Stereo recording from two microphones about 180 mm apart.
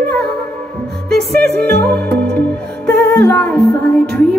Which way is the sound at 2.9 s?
60° right (ahead or behind).